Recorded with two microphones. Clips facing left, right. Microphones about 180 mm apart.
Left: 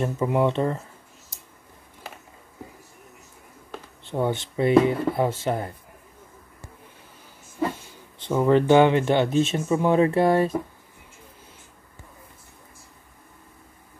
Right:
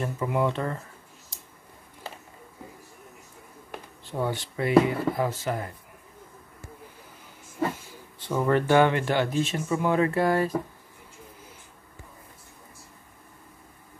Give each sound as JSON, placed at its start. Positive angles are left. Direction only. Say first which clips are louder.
{"t": 0.0, "sound": "speech", "louder": "left 4 dB", "side_deg": 25}
{"t": 4.0, "sound": "speech", "louder": "left 4 dB", "side_deg": 25}
{"t": 8.2, "sound": "speech", "louder": "left 5 dB", "side_deg": 20}